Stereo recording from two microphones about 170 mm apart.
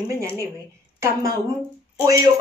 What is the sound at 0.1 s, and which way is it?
Speech, 15° right (ahead or behind).